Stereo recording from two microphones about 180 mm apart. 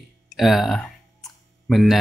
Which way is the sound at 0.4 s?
Centre (ahead or behind).